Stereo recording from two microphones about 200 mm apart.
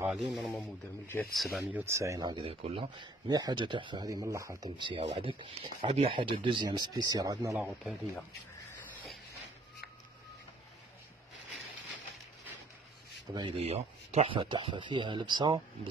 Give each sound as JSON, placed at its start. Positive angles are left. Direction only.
{"t": 0.0, "sound": "speech", "side_deg": 0}
{"t": 1.3, "sound": "speech", "side_deg": 0}
{"t": 7.5, "sound": "speech", "side_deg": -5}
{"t": 13.3, "sound": "speech", "side_deg": -25}